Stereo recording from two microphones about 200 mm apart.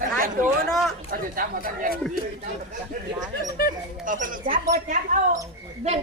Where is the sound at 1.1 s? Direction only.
45° right (ahead or behind).